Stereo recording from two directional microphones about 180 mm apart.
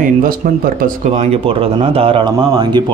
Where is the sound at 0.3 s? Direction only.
50° right (ahead or behind).